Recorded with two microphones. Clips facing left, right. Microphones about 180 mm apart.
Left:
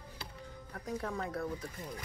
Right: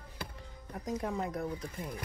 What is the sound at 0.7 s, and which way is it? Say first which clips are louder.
Speech: right 3 dB; 20° right (ahead or behind).